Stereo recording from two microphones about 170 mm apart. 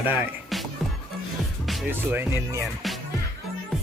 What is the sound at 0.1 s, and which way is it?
Music, 5° right (ahead or behind).